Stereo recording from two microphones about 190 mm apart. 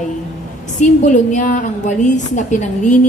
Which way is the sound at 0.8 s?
40° left (ahead or behind).